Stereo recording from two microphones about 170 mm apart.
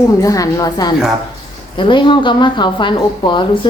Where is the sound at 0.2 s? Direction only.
20° left (ahead or behind).